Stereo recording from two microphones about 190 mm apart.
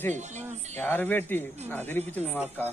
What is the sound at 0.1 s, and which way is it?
Speech, 35° right (ahead or behind).